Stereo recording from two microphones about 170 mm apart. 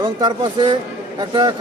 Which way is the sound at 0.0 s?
25° right (ahead or behind).